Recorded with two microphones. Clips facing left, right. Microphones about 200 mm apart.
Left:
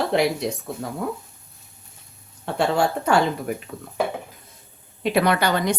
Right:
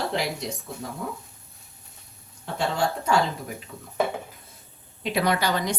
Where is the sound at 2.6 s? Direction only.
70° left (ahead or behind).